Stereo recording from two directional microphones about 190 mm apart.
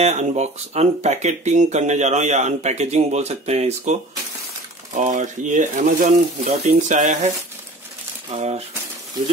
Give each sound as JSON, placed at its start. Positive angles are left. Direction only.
{"t": 0.0, "sound": "speech", "side_deg": -35}
{"t": 4.9, "sound": "speech", "side_deg": -40}